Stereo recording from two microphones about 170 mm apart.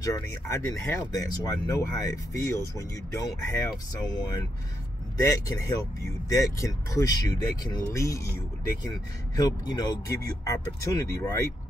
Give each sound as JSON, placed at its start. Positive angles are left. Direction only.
{"t": 0.0, "sound": "speech", "side_deg": 20}